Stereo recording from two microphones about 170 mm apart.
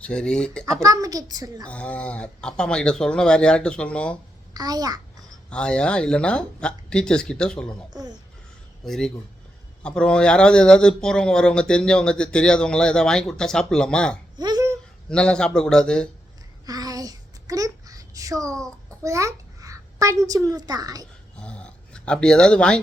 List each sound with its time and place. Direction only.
0.0 s speech: 5° left (ahead or behind)
0.8 s a child's voice: 20° right (ahead or behind)
1.6 s speech: 5° left (ahead or behind)
4.5 s a child's voice: 25° right (ahead or behind)
5.5 s speech: 5° left (ahead or behind)
14.3 s a sound: 25° right (ahead or behind)
15.1 s speech: 5° left (ahead or behind)
16.6 s a sound: 20° right (ahead or behind)
18.9 s a child's voice: 20° right (ahead or behind)
21.3 s dog: 5° left (ahead or behind)